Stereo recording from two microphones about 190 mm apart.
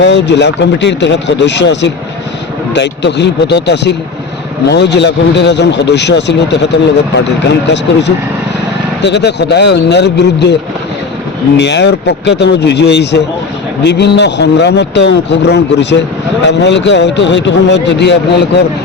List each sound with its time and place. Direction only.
0.0 s a man's voice: 65° left (ahead or behind)